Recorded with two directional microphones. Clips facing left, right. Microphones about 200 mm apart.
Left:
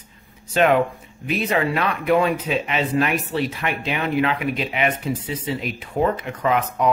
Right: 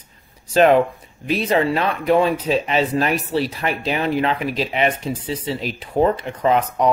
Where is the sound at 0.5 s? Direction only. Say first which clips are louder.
Right 4 dB; 35° right (ahead or behind).